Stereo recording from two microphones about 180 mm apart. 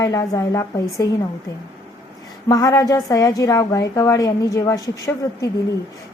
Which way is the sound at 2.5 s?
20° left (ahead or behind).